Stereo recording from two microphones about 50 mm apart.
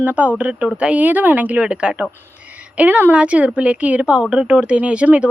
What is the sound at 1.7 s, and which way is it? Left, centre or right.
Speech, centre.